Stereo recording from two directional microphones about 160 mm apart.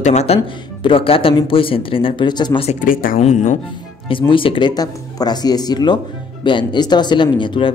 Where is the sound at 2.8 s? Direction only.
60° left (ahead or behind).